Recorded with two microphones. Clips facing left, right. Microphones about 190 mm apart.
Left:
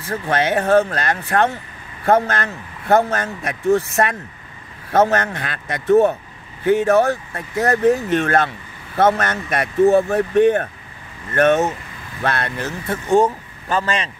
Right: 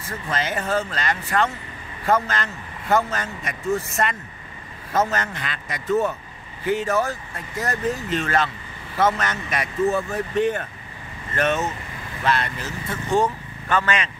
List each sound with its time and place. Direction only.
0.1 s speech: 65° left (ahead or behind); by 13.3 s 50° left (ahead or behind)
13.7 s speech: 35° left (ahead or behind)